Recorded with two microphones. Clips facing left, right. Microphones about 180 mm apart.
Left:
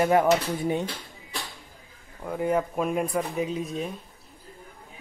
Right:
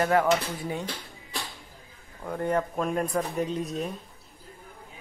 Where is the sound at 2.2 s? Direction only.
5° left (ahead or behind).